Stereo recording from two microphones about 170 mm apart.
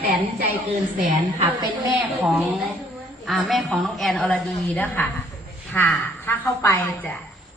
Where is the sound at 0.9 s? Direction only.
50° right (ahead or behind).